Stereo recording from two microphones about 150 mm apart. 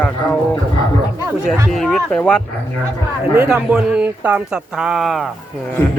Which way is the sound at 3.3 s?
15° right (ahead or behind).